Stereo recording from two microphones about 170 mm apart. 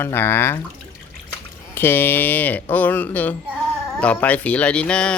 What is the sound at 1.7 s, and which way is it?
Speech, 10° left (ahead or behind).